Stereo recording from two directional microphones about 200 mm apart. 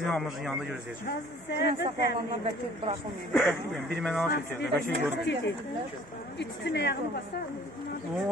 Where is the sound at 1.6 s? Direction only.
60° left (ahead or behind).